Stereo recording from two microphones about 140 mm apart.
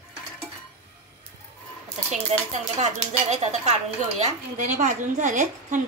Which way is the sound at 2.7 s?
50° right (ahead or behind).